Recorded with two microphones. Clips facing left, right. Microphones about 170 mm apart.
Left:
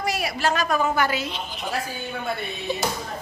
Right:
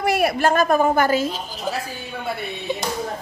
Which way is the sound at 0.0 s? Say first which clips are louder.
Right 6 dB; 60° right (ahead or behind).